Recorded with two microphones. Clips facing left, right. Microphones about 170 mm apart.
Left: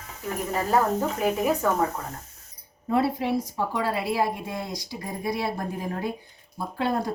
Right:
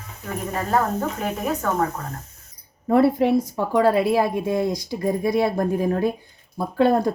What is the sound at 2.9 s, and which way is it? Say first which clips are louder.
A woman's voice: right 7 dB; 55° right (ahead or behind).